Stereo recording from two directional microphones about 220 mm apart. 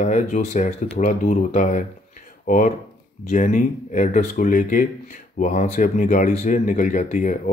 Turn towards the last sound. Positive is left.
turn(degrees=35)  # may be behind; listen again after turning